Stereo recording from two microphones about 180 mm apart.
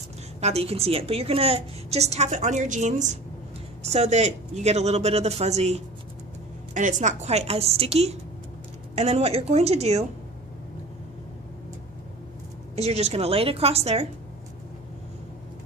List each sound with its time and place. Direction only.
0.4 s a woman's voice: 35° right (ahead or behind)
12.7 s a woman's voice: 35° right (ahead or behind)